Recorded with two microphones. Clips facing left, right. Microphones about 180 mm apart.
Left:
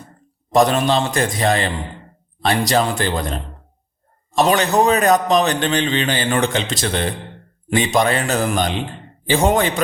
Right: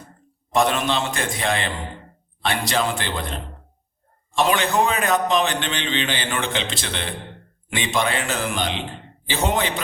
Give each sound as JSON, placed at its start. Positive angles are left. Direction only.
{"t": 0.5, "sound": "a man's voice", "side_deg": 40}